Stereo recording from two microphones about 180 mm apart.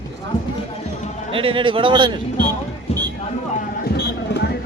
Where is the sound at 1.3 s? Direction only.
30° right (ahead or behind).